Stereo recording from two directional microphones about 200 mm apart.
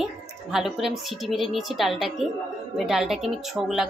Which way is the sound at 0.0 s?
Centre (ahead or behind).